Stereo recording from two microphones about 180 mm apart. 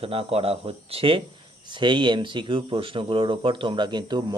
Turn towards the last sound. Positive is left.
turn(degrees=-25)  # may be behind; listen again after turning